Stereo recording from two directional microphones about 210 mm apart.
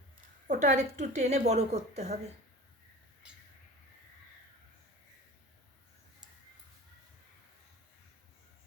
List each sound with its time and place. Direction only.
0.4 s a woman's voice: 35° right (ahead or behind)